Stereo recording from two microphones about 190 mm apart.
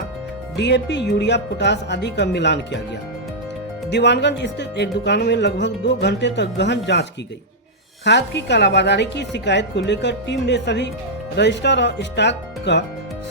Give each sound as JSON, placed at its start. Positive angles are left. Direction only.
{"t": 0.5, "sound": "a woman's voice", "side_deg": 65}
{"t": 3.8, "sound": "a woman's voice", "side_deg": 65}